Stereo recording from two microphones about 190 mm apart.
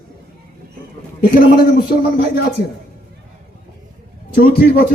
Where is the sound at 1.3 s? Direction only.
50° left (ahead or behind).